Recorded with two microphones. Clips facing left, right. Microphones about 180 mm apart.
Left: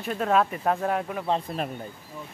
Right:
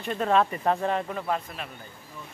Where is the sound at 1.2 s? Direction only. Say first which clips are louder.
Left 4 dB; 30° left (ahead or behind).